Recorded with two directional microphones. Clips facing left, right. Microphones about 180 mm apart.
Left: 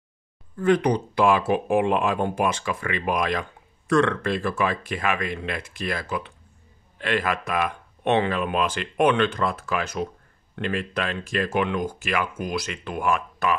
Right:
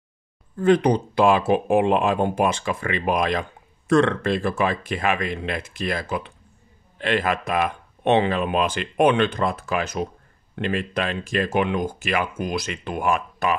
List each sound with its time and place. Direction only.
0.6 s speech: 25° right (ahead or behind)